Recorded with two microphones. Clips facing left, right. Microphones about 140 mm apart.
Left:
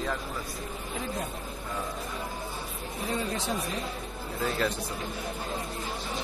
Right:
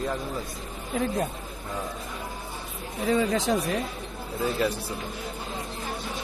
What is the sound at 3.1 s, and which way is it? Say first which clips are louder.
Speech: right 8 dB; 90° right.